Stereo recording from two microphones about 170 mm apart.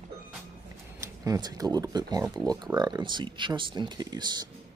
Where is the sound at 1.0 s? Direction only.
20° right (ahead or behind).